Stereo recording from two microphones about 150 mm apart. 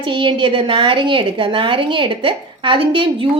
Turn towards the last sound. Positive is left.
turn(degrees=-35)  # may be behind; listen again after turning